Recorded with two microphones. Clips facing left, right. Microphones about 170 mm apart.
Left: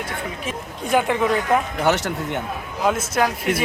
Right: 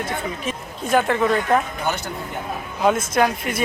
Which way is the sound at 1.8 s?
80° left.